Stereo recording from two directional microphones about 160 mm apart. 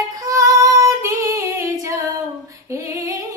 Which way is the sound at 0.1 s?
20° right (ahead or behind).